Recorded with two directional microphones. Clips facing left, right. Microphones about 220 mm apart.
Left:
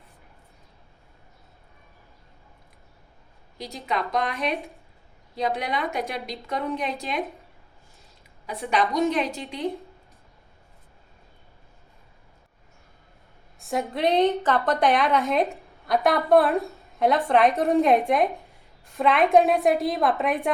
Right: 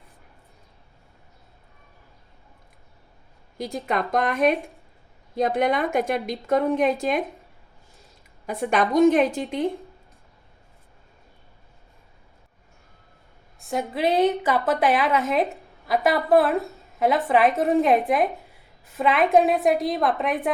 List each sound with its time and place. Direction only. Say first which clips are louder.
3.8 s a woman's voice: right 3 dB; 50° right (ahead or behind)
8.4 s a woman's voice: right 3 dB; 50° right (ahead or behind)
13.6 s a woman's voice: even; centre (ahead or behind)